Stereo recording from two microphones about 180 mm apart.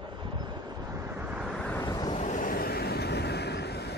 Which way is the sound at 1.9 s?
20° left (ahead or behind).